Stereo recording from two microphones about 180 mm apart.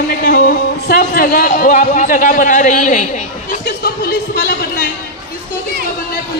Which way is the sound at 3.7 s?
55° left (ahead or behind).